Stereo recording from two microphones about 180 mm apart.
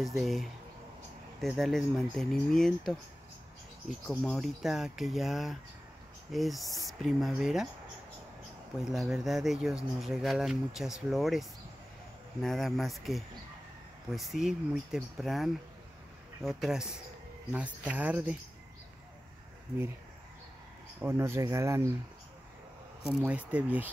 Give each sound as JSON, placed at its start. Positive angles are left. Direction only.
{"t": 0.0, "sound": "speech", "side_deg": 0}
{"t": 4.1, "sound": "speech", "side_deg": 0}
{"t": 8.8, "sound": "speech", "side_deg": 0}
{"t": 21.0, "sound": "speech", "side_deg": -15}
{"t": 23.0, "sound": "speech", "side_deg": -5}